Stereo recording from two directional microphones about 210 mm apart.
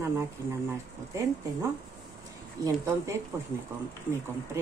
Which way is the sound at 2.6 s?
15° right (ahead or behind).